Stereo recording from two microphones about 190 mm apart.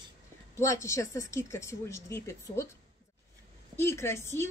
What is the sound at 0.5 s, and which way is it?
Speech, 15° left (ahead or behind).